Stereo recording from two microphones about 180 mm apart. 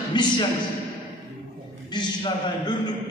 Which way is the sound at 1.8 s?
25° left (ahead or behind).